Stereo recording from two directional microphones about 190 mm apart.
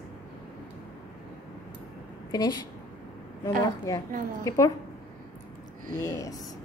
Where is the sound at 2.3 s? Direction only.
20° left (ahead or behind).